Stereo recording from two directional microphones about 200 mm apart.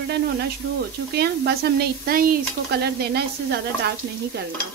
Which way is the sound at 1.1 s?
55° right (ahead or behind).